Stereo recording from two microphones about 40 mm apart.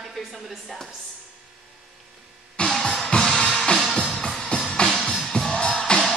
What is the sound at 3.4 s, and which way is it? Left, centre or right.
Music, centre.